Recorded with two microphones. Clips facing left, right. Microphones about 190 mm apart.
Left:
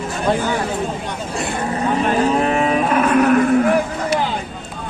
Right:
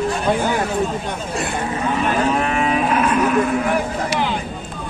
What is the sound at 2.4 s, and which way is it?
Cattle, 35° left (ahead or behind).